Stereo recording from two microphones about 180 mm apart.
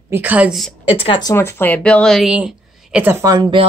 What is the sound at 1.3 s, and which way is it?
Speech, 15° left (ahead or behind).